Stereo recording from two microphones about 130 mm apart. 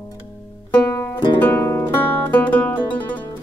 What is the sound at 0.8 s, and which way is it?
Music, 20° left (ahead or behind).